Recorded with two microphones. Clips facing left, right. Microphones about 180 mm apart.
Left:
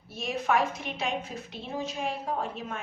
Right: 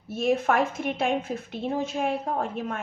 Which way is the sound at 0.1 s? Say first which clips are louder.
Right 5 dB; 50° right (ahead or behind).